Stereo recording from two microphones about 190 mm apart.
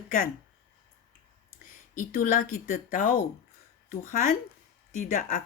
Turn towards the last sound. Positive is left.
turn(degrees=40)  # may be behind; listen again after turning